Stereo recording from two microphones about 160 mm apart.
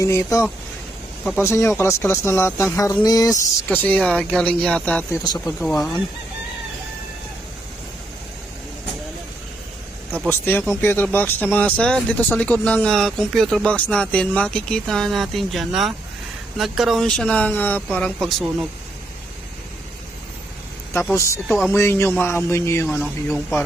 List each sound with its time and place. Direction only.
0.0 s speech: 20° left (ahead or behind)
3.7 s speech: 10° left (ahead or behind)
5.2 s speech: 25° left (ahead or behind)
5.5 s speech: 5° left (ahead or behind)
10.2 s speech: 15° left (ahead or behind)
21.7 s speech: 15° left (ahead or behind)
23.0 s speech: 5° left (ahead or behind)